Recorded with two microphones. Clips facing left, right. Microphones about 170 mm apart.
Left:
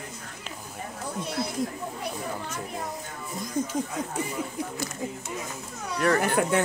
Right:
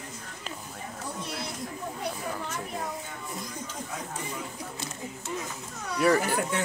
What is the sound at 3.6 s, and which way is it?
Speech, 45° left (ahead or behind).